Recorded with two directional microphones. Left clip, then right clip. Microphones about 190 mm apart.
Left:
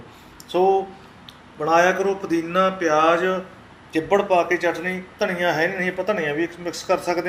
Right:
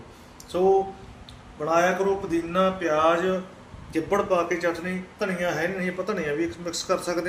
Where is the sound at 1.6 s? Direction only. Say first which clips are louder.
Left 4 dB; 15° left (ahead or behind).